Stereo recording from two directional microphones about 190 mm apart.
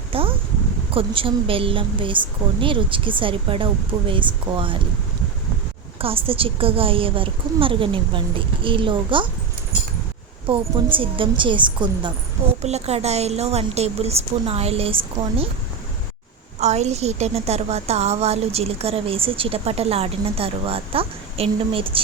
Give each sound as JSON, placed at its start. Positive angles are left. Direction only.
{"t": 0.1, "sound": "a sound", "side_deg": -30}
{"t": 0.9, "sound": "a woman's voice", "side_deg": -30}
{"t": 6.0, "sound": "a woman's voice", "side_deg": -30}
{"t": 10.5, "sound": "a woman's voice", "side_deg": -25}
{"t": 12.6, "sound": "a woman's voice", "side_deg": -35}
{"t": 16.6, "sound": "a woman's voice", "side_deg": -35}